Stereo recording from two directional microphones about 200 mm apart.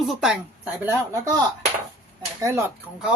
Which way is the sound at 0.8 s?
15° right (ahead or behind).